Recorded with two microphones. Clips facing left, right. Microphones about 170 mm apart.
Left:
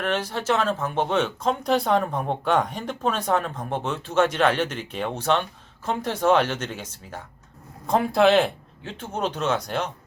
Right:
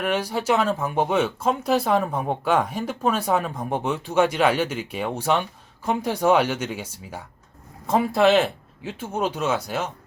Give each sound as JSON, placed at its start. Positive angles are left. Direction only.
{"t": 0.0, "sound": "speech", "side_deg": -10}